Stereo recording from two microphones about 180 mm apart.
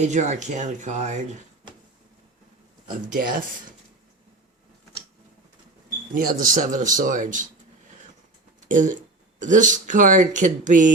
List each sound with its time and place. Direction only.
0.0 s speech: 40° right (ahead or behind)
2.8 s speech: 50° right (ahead or behind)
6.1 s speech: 50° right (ahead or behind)
8.6 s speech: 45° right (ahead or behind)